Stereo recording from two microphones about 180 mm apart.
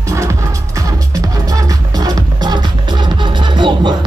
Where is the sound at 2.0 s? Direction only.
20° right (ahead or behind).